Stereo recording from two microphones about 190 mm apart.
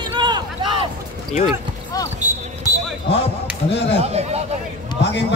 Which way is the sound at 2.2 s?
40° right (ahead or behind).